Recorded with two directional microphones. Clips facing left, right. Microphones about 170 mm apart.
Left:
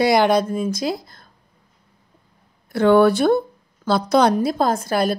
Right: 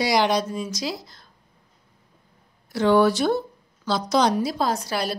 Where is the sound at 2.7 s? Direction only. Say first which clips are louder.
Left 4 dB; 55° left (ahead or behind).